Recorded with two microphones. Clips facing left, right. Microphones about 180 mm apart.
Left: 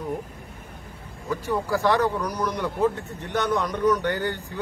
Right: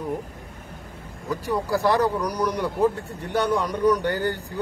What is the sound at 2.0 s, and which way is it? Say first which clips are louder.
A man's voice: right 2 dB; 10° right (ahead or behind).